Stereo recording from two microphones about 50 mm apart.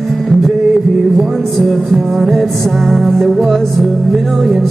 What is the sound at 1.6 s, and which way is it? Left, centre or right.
Music, centre.